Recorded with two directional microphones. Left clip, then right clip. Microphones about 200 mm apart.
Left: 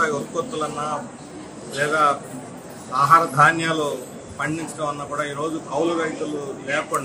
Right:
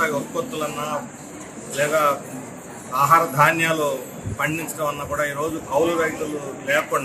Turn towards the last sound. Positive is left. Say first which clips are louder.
# right 3 dB
turn(degrees=0)  # may be behind; listen again after turning